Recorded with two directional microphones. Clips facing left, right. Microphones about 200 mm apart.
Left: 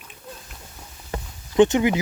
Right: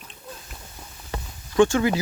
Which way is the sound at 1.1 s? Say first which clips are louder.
Left 2 dB; 20° left (ahead or behind).